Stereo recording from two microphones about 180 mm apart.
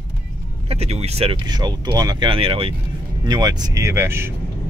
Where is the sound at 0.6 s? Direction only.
35° right (ahead or behind); by 4.3 s 15° right (ahead or behind).